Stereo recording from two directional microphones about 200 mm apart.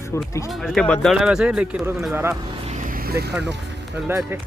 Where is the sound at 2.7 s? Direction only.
45° right (ahead or behind).